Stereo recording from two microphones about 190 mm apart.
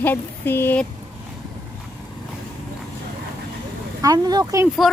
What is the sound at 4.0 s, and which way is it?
Speech, 20° right (ahead or behind).